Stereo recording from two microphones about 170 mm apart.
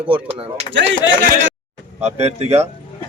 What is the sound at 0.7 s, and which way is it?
Speech, 90° right.